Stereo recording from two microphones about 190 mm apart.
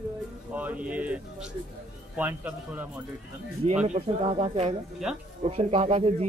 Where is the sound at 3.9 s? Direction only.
30° right (ahead or behind).